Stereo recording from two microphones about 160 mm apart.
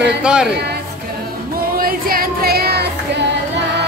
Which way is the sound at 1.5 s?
65° right (ahead or behind).